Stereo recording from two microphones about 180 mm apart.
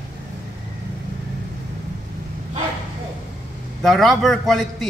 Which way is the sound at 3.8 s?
Centre (ahead or behind).